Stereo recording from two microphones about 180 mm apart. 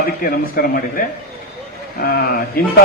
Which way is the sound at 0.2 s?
55° left (ahead or behind).